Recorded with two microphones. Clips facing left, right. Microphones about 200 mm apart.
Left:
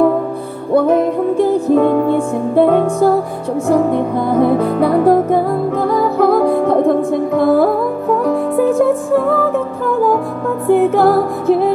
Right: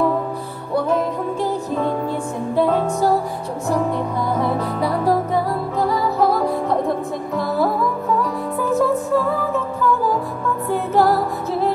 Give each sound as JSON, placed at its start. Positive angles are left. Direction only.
{"t": 0.7, "sound": "music", "side_deg": 55}
{"t": 10.7, "sound": "music", "side_deg": 55}